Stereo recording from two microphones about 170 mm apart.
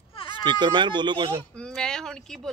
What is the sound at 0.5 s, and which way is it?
Speech, 25° right (ahead or behind).